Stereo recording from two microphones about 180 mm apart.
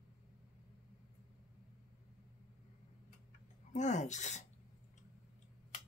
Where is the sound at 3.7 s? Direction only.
40° left (ahead or behind).